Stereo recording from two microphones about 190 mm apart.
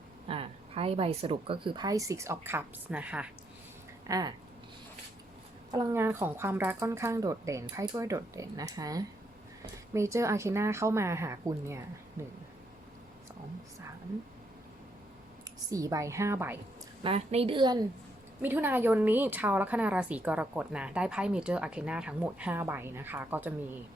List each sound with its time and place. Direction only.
0.3 s a woman's voice: 30° right (ahead or behind); by 3.2 s 5° right (ahead or behind)
4.1 s a woman's voice: 20° right (ahead or behind)
5.7 s a woman's voice: 10° right (ahead or behind)
15.7 s a woman's voice: 15° right (ahead or behind)
17.0 s a woman's voice: 30° right (ahead or behind)
18.4 s a woman's voice: 10° right (ahead or behind)